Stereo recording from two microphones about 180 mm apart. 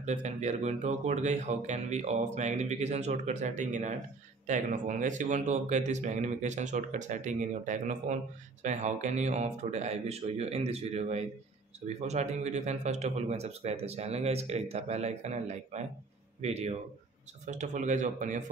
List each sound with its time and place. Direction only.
0.0 s speech: 40° right (ahead or behind)